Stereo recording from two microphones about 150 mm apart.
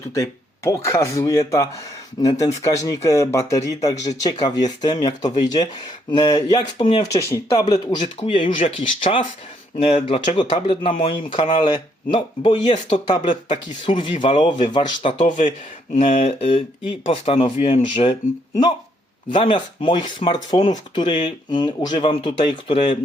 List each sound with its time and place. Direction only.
0.1 s speech: 20° left (ahead or behind)
8.2 s speech: 40° left (ahead or behind)
15.2 s speech: 55° left (ahead or behind)
16.2 s speech: 40° left (ahead or behind)
19.3 s speech: 35° left (ahead or behind)